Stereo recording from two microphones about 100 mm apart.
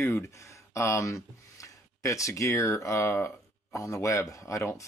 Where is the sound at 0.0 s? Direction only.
30° left (ahead or behind).